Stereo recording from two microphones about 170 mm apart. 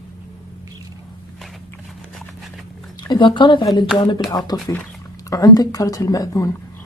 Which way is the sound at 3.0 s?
25° left (ahead or behind).